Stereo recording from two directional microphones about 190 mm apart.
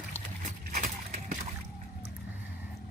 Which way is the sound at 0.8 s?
45° right (ahead or behind).